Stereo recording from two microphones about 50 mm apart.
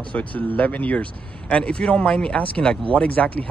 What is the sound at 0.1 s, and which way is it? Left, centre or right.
Speech, left.